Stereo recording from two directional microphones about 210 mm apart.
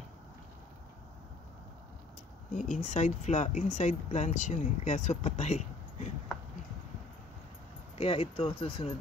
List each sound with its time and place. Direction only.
2.5 s speech: 35° left (ahead or behind)
8.0 s speech: 25° left (ahead or behind)